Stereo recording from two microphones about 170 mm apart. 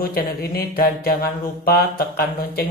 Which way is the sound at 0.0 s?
60° left (ahead or behind).